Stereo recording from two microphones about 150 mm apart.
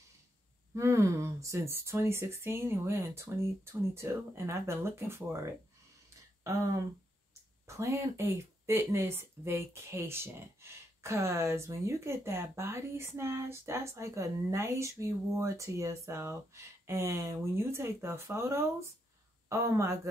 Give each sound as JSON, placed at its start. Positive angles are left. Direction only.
{"t": 0.7, "sound": "speech", "side_deg": -20}
{"t": 7.6, "sound": "speech", "side_deg": -20}